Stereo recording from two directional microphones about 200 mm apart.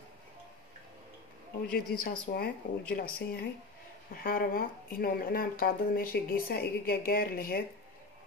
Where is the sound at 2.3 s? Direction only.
45° left (ahead or behind).